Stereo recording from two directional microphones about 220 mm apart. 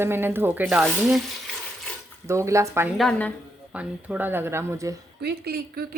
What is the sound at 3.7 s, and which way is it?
Speech, 5° right (ahead or behind).